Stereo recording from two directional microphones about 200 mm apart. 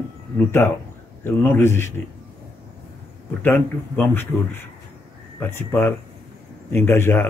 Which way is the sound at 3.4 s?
10° left (ahead or behind).